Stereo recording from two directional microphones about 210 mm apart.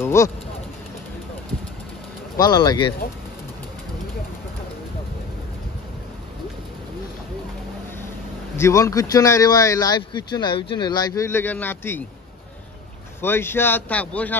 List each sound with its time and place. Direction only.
0.0 s speech: 15° left (ahead or behind)
2.3 s speech: 20° left (ahead or behind)
8.5 s speech: 15° left (ahead or behind)
13.2 s speech: 10° left (ahead or behind)